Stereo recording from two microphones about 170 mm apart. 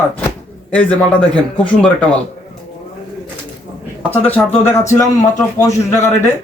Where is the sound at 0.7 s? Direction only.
5° left (ahead or behind).